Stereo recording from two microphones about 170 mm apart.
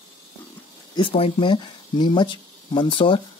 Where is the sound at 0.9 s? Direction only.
35° left (ahead or behind).